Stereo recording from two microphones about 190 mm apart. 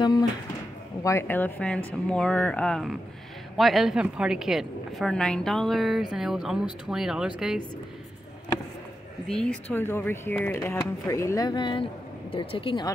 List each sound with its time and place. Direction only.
1.0 s speech: 10° left (ahead or behind); by 7.6 s 5° right (ahead or behind)
9.3 s speech: 5° left (ahead or behind); by 12.9 s 25° left (ahead or behind)